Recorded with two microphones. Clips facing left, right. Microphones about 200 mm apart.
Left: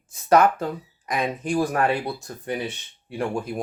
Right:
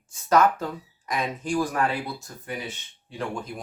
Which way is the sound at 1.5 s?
35° left (ahead or behind).